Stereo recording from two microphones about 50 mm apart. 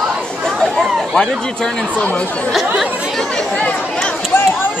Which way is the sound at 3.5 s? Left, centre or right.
Left.